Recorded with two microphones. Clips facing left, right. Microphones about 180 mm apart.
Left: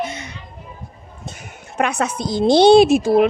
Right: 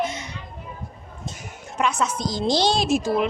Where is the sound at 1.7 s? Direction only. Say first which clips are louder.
Left 3 dB; 60° left (ahead or behind).